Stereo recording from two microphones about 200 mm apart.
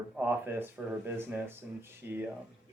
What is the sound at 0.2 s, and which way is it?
Speech, 10° right (ahead or behind).